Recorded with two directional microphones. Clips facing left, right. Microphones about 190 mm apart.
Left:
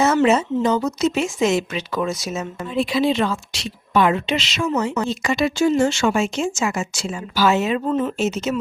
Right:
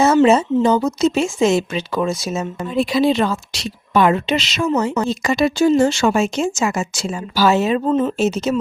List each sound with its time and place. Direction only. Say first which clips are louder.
0.0 s speech: right 4 dB; 30° right (ahead or behind)
2.6 s a woman's voice: right 3 dB; 40° right (ahead or behind)